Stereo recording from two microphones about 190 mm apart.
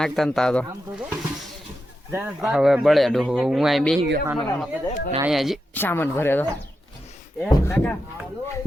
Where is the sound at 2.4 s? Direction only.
Centre (ahead or behind).